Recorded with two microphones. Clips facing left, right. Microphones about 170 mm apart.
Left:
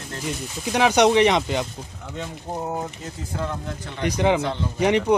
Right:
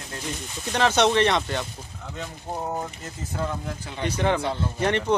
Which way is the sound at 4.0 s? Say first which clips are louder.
Left 3 dB; 15° left (ahead or behind).